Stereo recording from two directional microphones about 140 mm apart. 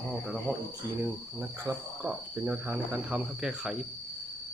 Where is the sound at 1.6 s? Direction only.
15° right (ahead or behind).